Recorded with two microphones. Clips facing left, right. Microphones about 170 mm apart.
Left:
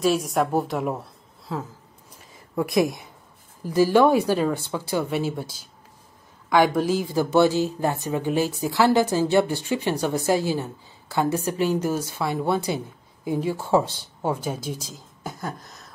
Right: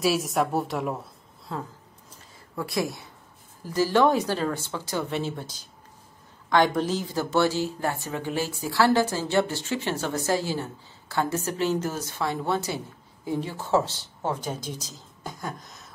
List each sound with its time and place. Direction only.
0.0 s a woman's voice: 5° right (ahead or behind)
2.0 s a sound: 20° left (ahead or behind)
3.6 s speech: 15° left (ahead or behind)